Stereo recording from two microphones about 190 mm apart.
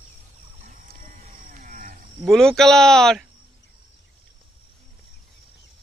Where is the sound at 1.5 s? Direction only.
45° right (ahead or behind).